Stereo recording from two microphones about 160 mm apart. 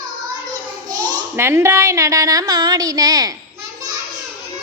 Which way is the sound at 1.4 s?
15° right (ahead or behind).